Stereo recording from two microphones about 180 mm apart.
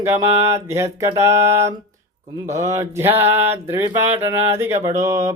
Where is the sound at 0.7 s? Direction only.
15° right (ahead or behind).